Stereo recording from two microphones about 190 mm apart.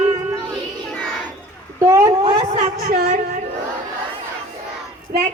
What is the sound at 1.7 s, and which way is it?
Speech, 15° right (ahead or behind).